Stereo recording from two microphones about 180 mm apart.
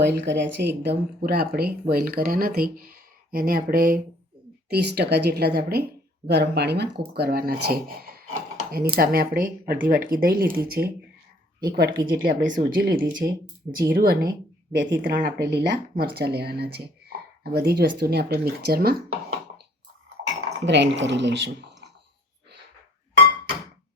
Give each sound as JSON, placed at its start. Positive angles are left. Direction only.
{"t": 0.0, "sound": "speech", "side_deg": -70}
{"t": 4.7, "sound": "a woman's voice", "side_deg": -70}
{"t": 14.8, "sound": "speech", "side_deg": -80}
{"t": 15.2, "sound": "a woman's voice", "side_deg": -70}
{"t": 20.2, "sound": "speech", "side_deg": -80}